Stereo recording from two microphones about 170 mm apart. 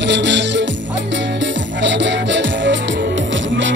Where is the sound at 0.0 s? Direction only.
90° right.